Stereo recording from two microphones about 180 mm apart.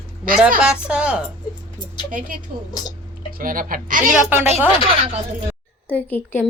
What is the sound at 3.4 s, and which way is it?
Speech, 50° right (ahead or behind).